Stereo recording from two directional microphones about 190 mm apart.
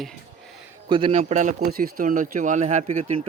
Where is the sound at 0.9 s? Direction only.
25° right (ahead or behind).